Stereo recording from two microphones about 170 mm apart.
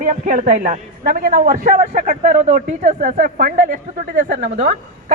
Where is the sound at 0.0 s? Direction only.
50° right (ahead or behind).